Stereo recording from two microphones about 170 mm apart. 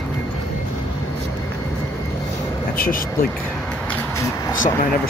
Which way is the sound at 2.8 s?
55° left (ahead or behind).